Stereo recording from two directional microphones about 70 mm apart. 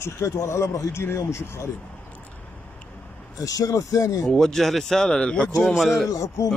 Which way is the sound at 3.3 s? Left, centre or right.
Left.